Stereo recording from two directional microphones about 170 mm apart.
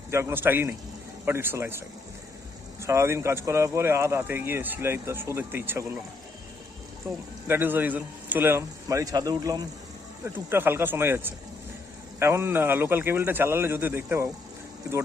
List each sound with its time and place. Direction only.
0.1 s speech: 15° right (ahead or behind)
2.8 s speech: 15° right (ahead or behind)
7.1 s speech: 15° right (ahead or behind)
10.2 s speech: 10° right (ahead or behind)